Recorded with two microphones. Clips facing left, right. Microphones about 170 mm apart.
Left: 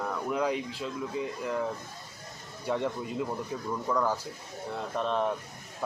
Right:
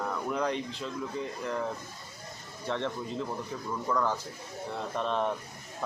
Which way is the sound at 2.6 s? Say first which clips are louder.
Left 2 dB; 10° left (ahead or behind).